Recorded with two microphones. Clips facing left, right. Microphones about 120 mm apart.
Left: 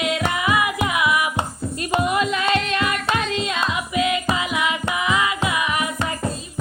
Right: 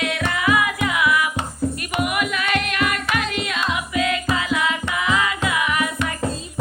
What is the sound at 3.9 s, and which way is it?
Music, 20° left (ahead or behind).